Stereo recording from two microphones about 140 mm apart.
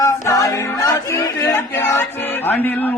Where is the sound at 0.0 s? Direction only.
25° left (ahead or behind).